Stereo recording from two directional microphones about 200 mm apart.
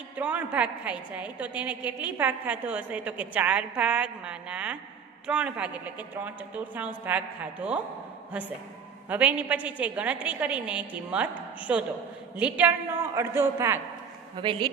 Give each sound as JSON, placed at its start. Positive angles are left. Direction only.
{"t": 0.1, "sound": "a woman's voice", "side_deg": -5}
{"t": 9.1, "sound": "a woman's voice", "side_deg": -10}
{"t": 14.3, "sound": "speech", "side_deg": -25}